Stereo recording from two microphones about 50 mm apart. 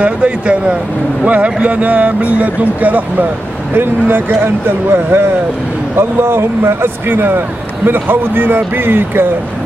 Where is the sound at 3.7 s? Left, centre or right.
Right.